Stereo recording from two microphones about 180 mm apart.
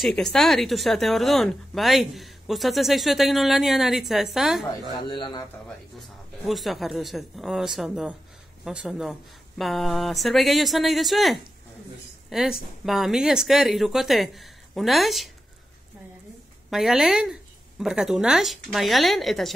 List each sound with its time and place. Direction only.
0.0 s speech: 5° left (ahead or behind)
4.9 s a man's voice: 25° left (ahead or behind)
5.9 s a woman's voice: centre (ahead or behind)
16.7 s speech: centre (ahead or behind)